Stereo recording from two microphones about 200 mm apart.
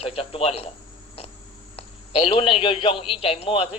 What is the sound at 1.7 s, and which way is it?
A man's voice, 30° left (ahead or behind).